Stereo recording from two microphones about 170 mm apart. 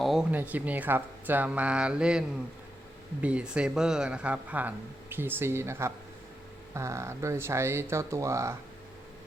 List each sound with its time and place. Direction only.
0.0 s speech: 5° right (ahead or behind)